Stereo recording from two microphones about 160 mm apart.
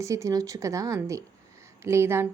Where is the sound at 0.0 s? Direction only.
20° right (ahead or behind).